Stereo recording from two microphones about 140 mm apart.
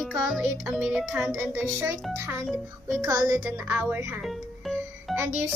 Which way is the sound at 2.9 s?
25° right (ahead or behind).